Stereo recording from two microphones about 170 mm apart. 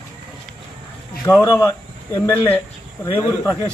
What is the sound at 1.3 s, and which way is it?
Speech, 15° left (ahead or behind).